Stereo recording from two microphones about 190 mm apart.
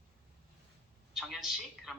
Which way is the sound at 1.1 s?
Centre (ahead or behind).